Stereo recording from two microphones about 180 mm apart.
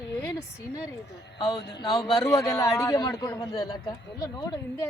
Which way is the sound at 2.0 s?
Centre (ahead or behind).